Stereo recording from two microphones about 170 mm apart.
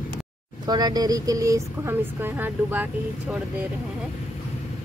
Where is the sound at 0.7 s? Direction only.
25° right (ahead or behind).